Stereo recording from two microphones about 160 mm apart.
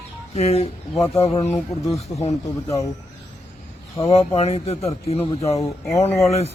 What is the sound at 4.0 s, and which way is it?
A man's voice, 40° left (ahead or behind).